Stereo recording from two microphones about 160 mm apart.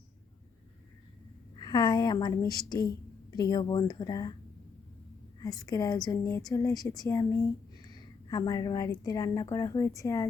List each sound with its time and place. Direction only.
1.5 s a woman's voice: 25° left (ahead or behind)
5.4 s a woman's voice: 25° left (ahead or behind)